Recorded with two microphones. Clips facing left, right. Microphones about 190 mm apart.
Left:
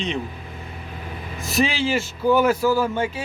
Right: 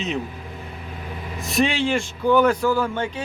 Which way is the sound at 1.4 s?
Centre (ahead or behind).